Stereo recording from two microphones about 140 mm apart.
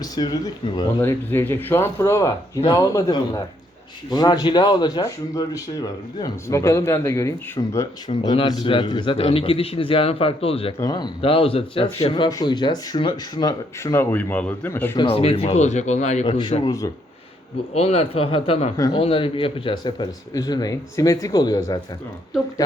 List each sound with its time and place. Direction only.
0.0 s speech: 30° left (ahead or behind)
1.0 s speech: 15° left (ahead or behind); by 10.8 s 40° left (ahead or behind)
10.8 s speech: 30° left (ahead or behind)
11.2 s speech: 40° left (ahead or behind); by 14.9 s 15° left (ahead or behind)
14.9 s speech: 40° left (ahead or behind); by 16.2 s 55° left (ahead or behind)
16.2 s speech: 35° left (ahead or behind)
16.6 s speech: 25° left (ahead or behind)
17.7 s speech: 50° left (ahead or behind); by 21.8 s 25° left (ahead or behind)